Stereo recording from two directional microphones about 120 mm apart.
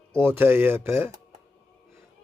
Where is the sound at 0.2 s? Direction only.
20° right (ahead or behind).